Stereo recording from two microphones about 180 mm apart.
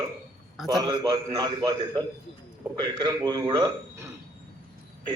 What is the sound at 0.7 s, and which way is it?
A man's voice, 20° right (ahead or behind).